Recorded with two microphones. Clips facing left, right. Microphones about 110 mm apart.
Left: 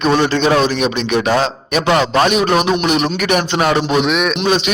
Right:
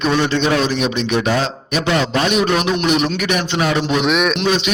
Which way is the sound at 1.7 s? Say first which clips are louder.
Left 4 dB; 55° left (ahead or behind).